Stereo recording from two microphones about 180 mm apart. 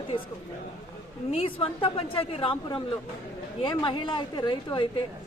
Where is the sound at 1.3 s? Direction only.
30° left (ahead or behind).